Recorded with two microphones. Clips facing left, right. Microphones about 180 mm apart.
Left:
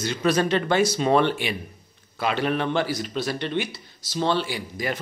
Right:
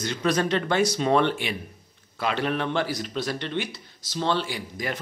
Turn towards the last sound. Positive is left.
turn(degrees=5)  # may be behind; listen again after turning